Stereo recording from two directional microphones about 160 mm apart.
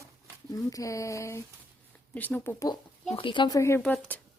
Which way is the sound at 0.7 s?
20° left (ahead or behind).